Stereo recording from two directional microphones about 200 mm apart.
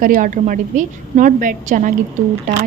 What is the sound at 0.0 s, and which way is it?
Speech, 40° right (ahead or behind).